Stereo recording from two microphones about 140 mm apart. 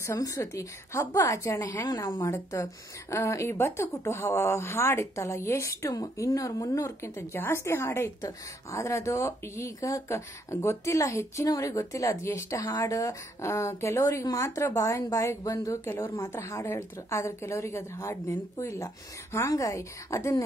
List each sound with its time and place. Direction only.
0.0 s speech: 25° left (ahead or behind)